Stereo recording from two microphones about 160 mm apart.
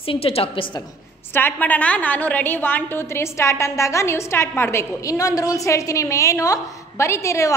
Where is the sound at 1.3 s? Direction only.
10° left (ahead or behind).